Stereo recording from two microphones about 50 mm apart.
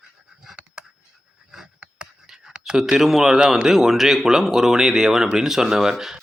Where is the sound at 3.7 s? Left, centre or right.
Centre.